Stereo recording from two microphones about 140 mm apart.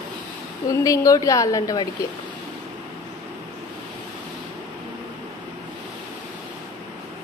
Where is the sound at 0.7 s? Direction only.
25° left (ahead or behind).